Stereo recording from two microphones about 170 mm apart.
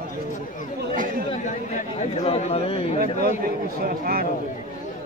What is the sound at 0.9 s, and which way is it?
Chatter, 55° right (ahead or behind).